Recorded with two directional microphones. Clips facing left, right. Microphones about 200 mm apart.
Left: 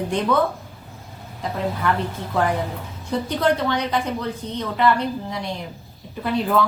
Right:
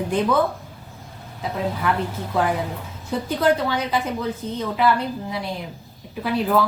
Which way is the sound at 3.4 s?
5° right (ahead or behind).